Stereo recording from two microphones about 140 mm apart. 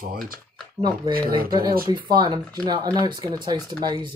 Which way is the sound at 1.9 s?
30° right (ahead or behind).